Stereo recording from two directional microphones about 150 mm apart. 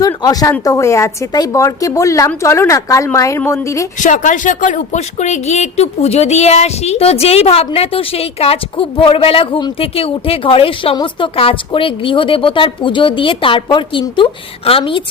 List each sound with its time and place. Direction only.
0.0 s a woman's voice: 25° left (ahead or behind)
4.0 s a woman's voice: 55° left (ahead or behind); by 15.0 s 35° left (ahead or behind)